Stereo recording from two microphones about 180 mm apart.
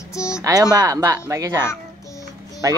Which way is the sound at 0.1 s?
15° left (ahead or behind).